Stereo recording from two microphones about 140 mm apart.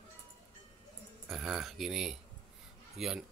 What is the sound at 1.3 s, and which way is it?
Speech, 5° right (ahead or behind).